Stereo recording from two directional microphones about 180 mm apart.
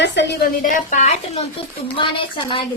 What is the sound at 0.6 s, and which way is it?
A woman's voice, 45° left (ahead or behind).